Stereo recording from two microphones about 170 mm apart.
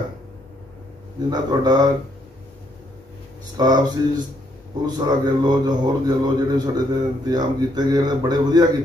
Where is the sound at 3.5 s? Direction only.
25° right (ahead or behind).